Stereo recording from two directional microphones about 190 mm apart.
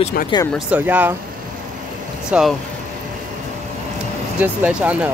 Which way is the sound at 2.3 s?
Centre (ahead or behind).